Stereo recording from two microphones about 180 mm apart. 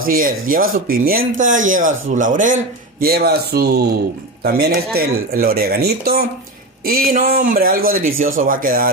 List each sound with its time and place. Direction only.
0.0 s a man's voice: 50° right (ahead or behind)